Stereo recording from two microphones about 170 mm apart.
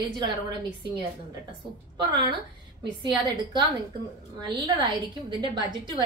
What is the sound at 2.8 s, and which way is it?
A woman's voice, 25° right (ahead or behind).